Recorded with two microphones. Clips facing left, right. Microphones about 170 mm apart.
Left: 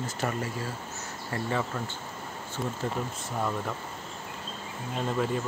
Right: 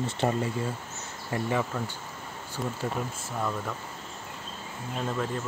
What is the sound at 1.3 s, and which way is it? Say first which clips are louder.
Speech: right 2 dB; 15° right (ahead or behind).